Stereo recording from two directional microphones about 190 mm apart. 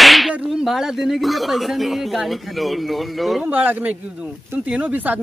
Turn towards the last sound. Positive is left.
turn(degrees=-10)  # may be behind; listen again after turning